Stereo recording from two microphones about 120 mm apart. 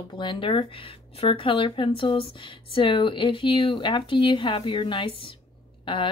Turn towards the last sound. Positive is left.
turn(degrees=45)  # may be behind; listen again after turning